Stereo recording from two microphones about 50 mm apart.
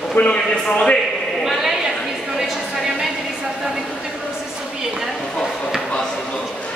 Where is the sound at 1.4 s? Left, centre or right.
Centre.